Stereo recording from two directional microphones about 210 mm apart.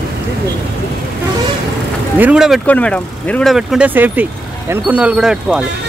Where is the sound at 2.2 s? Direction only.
5° right (ahead or behind).